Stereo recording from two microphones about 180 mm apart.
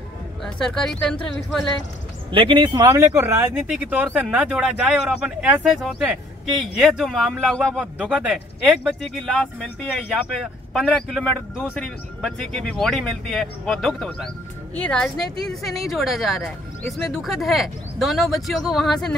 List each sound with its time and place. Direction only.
0.4 s speech: 5° left (ahead or behind)
2.3 s speech: 30° right (ahead or behind); by 19.1 s centre (ahead or behind)